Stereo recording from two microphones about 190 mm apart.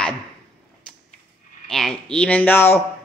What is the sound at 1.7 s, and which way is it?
Speech, 5° left (ahead or behind).